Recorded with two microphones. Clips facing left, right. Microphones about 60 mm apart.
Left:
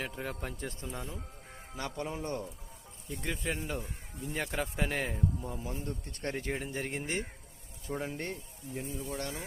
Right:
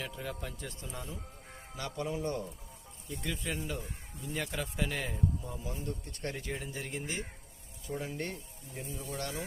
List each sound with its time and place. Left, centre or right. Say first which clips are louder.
0.0 s speech: left 2 dB; left
3.2 s speech: left 2 dB; left
8.0 s speech: left 1 dB; left
9.0 s speech: right 1 dB; centre